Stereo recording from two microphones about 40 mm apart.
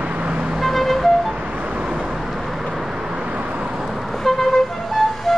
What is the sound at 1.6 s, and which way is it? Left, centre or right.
Vehicle, right.